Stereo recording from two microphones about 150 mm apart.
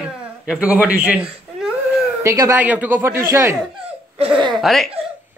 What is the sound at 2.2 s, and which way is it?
Speech, 25° right (ahead or behind).